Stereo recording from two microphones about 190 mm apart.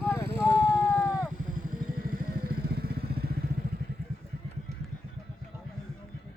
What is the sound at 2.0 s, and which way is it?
Motorcycle, 50° right (ahead or behind).